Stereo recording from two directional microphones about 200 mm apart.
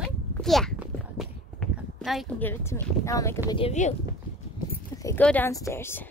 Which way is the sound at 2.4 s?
10° left (ahead or behind).